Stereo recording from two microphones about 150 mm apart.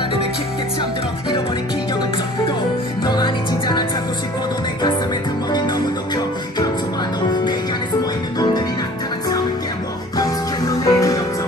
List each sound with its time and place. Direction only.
3.1 s music: 30° left (ahead or behind)
10.1 s music: 25° left (ahead or behind)